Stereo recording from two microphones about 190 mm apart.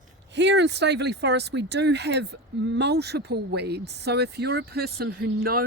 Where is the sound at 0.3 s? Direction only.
65° right (ahead or behind).